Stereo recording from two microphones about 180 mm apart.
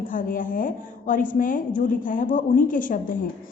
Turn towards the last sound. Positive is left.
turn(degrees=50)  # may be behind; listen again after turning